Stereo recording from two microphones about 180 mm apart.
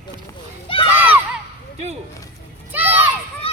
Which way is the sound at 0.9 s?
10° right (ahead or behind).